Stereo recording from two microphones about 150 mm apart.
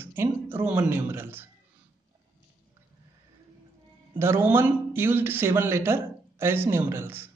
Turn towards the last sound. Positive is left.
turn(degrees=-15)  # may be behind; listen again after turning